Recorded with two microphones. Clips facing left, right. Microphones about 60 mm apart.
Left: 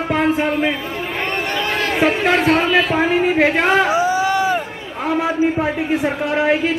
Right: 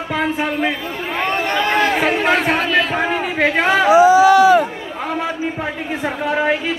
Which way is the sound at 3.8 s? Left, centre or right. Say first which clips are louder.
Right 7 dB; right.